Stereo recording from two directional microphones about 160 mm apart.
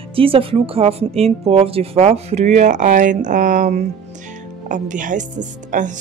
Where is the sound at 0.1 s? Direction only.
35° right (ahead or behind).